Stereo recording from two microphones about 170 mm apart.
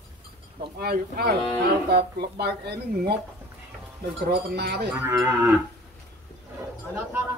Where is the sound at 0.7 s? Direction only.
65° right (ahead or behind).